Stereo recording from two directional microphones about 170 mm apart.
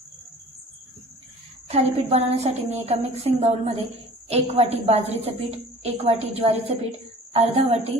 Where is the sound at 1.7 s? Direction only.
40° right (ahead or behind).